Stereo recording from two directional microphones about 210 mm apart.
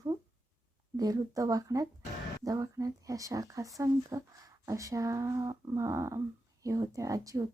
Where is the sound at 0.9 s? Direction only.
15° right (ahead or behind).